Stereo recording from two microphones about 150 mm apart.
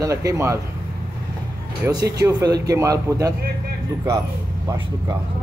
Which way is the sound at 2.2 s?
25° right (ahead or behind).